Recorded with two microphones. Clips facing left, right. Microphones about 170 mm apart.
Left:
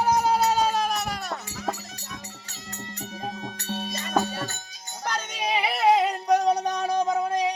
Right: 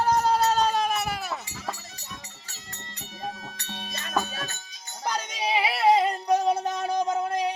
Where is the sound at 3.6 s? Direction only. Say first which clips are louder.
Left 9 dB; 35° left (ahead or behind).